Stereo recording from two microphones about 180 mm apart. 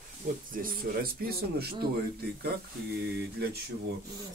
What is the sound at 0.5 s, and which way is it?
Speech, 50° right (ahead or behind).